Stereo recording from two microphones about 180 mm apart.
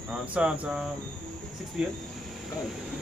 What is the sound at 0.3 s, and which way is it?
Speech, 5° right (ahead or behind).